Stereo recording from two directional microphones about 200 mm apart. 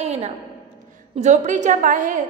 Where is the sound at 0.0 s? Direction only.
35° right (ahead or behind).